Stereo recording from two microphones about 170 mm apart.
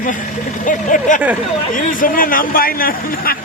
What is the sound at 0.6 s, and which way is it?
A man's voice, 50° left (ahead or behind).